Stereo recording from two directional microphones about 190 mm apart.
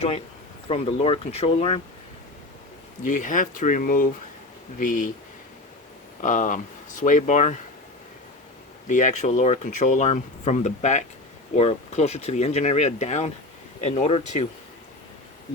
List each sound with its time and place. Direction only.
0.7 s speech: 30° left (ahead or behind)
3.0 s speech: 40° left (ahead or behind)
6.2 s speech: 45° left (ahead or behind)
8.9 s speech: 40° left (ahead or behind)